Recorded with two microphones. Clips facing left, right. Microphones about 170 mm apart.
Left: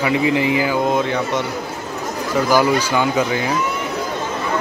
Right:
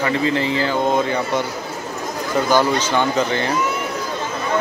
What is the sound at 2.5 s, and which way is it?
Speech, 5° left (ahead or behind).